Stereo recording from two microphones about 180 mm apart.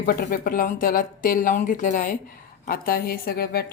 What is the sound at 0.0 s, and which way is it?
Speech, 50° left (ahead or behind).